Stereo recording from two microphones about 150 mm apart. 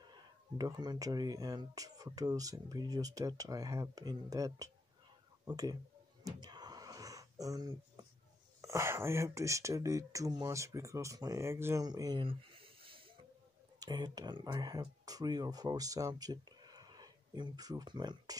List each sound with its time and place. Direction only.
0.1 s speech: 30° right (ahead or behind)
6.2 s a sound: 30° right (ahead or behind)
8.5 s speech: 20° right (ahead or behind)